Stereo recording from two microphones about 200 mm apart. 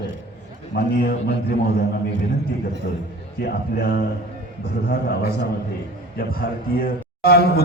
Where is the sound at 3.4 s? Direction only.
45° left (ahead or behind).